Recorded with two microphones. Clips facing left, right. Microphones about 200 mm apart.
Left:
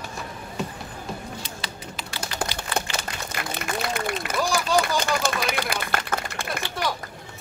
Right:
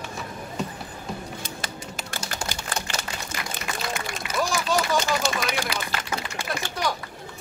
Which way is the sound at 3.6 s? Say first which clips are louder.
Left 4 dB; 55° left (ahead or behind).